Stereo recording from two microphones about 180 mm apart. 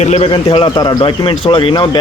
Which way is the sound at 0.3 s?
25° left (ahead or behind).